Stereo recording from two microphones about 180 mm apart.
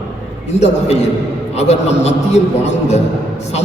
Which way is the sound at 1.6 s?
35° left (ahead or behind).